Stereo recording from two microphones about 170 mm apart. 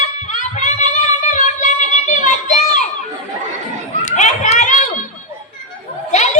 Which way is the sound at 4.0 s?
45° left (ahead or behind).